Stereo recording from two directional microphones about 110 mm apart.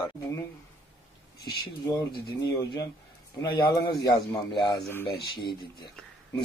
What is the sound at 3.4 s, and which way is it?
A man's voice, 40° left (ahead or behind).